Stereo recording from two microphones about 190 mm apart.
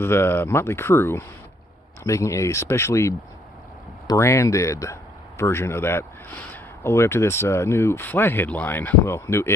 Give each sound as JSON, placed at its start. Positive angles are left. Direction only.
{"t": 0.0, "sound": "speech", "side_deg": 10}